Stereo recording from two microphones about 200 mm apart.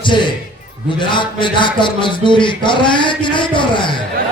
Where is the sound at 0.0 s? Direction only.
25° left (ahead or behind).